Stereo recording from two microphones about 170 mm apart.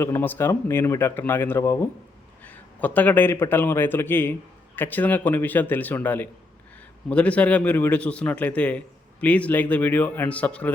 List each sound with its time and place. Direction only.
0.0 s a man's voice: 10° left (ahead or behind)